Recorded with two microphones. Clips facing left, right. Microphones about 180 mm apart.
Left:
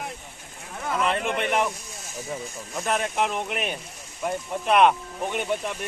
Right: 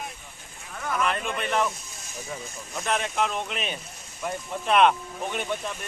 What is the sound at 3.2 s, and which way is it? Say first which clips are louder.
Speech: left 2 dB; 15° left (ahead or behind).